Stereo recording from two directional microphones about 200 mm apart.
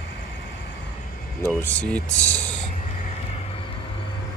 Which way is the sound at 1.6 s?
5° left (ahead or behind).